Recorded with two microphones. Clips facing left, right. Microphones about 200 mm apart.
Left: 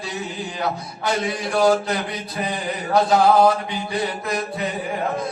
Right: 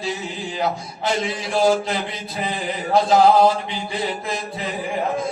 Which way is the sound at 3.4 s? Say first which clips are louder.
Even; 25° right (ahead or behind).